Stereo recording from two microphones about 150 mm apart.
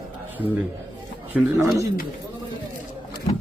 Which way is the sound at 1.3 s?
10° right (ahead or behind).